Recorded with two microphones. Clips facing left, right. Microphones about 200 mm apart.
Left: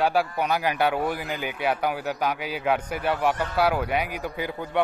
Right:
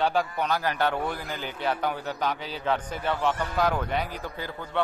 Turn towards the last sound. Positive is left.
turn(degrees=15)  # may be behind; listen again after turning